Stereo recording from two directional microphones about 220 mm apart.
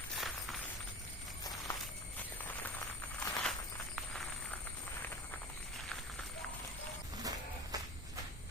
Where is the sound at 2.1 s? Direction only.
10° left (ahead or behind).